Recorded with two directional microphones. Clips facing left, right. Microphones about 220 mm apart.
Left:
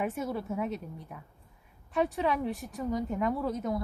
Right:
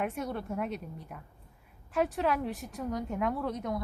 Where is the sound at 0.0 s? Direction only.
5° left (ahead or behind).